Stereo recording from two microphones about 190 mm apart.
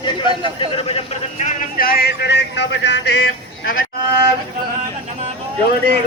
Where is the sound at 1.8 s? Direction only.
55° left (ahead or behind).